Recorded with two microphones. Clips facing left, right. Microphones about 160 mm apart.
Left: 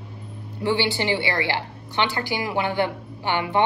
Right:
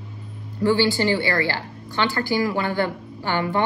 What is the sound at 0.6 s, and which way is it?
A woman's voice, 20° left (ahead or behind).